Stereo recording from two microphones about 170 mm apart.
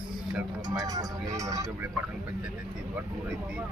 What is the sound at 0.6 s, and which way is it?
Speech, 20° right (ahead or behind).